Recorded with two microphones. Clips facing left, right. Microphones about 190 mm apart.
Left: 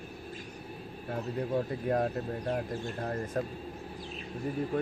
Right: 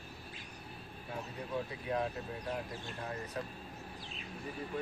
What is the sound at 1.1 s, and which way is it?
Speech, 50° left (ahead or behind).